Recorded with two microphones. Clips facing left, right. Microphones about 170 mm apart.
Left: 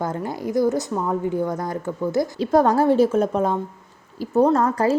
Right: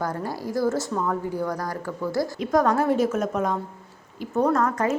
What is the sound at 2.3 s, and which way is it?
A woman's voice, 30° left (ahead or behind).